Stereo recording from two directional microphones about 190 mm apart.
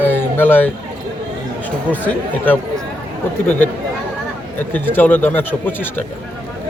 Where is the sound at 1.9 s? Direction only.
10° left (ahead or behind).